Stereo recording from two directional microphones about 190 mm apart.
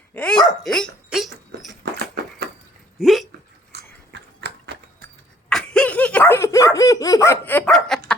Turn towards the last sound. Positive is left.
turn(degrees=5)  # may be behind; listen again after turning